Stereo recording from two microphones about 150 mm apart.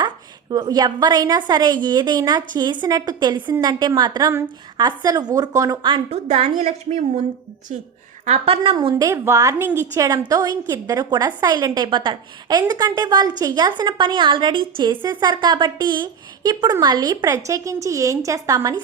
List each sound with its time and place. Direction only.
0.5 s a woman's voice: 25° right (ahead or behind)
5.9 s a woman's voice: 45° right (ahead or behind)
8.2 s a woman's voice: 45° right (ahead or behind)
9.0 s a woman's voice: 20° right (ahead or behind)